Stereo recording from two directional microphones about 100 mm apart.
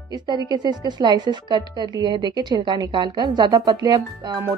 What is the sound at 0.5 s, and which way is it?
A woman's voice, 45° right (ahead or behind).